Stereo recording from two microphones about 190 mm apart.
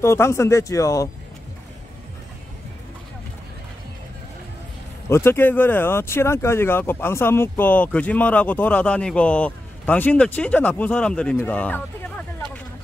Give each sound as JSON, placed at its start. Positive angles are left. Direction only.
{"t": 0.0, "sound": "speech", "side_deg": 15}
{"t": 5.1, "sound": "speech", "side_deg": 10}